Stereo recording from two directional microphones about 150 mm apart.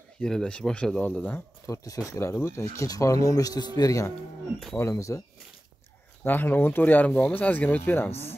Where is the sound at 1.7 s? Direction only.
20° left (ahead or behind).